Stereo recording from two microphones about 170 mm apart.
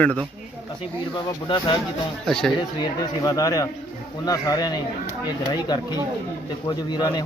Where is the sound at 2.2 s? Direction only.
5° left (ahead or behind).